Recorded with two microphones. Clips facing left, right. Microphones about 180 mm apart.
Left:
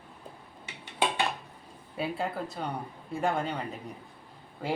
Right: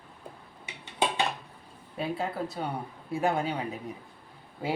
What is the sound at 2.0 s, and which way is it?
Speech, centre (ahead or behind).